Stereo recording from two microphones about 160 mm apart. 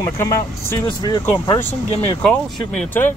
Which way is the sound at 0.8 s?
25° left (ahead or behind).